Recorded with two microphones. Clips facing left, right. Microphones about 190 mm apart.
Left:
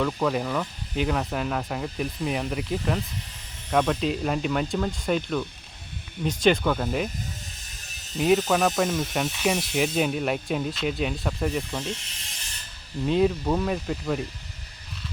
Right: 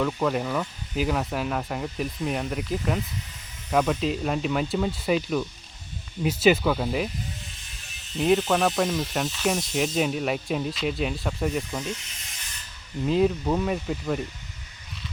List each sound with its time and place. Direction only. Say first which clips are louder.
0.0 s speech: even; centre (ahead or behind)
7.6 s a sound: even; 40° left (ahead or behind)
8.1 s speech: even; centre (ahead or behind)
13.1 s speech: even; centre (ahead or behind)